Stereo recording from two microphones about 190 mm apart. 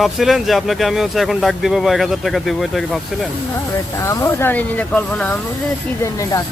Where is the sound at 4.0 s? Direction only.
15° left (ahead or behind).